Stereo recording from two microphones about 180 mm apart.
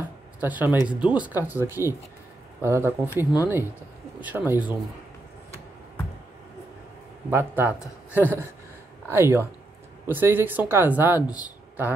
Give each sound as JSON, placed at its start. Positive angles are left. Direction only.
{"t": 0.4, "sound": "speech", "side_deg": -10}
{"t": 7.2, "sound": "speech", "side_deg": -10}